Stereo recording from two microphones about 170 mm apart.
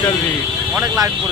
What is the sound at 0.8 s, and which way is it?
Speech, 20° right (ahead or behind).